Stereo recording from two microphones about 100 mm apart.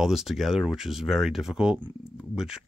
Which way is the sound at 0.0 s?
5° right (ahead or behind).